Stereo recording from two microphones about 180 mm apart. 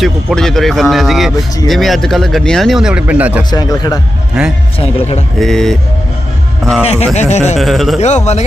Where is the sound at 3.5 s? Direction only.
20° left (ahead or behind).